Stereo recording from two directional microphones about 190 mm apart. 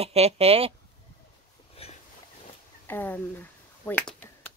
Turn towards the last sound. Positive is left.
turn(degrees=10)  # may be behind; listen again after turning